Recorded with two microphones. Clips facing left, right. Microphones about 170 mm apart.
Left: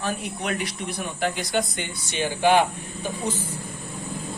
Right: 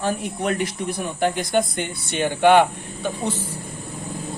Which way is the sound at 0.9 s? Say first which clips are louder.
Right 4 dB; 50° right (ahead or behind).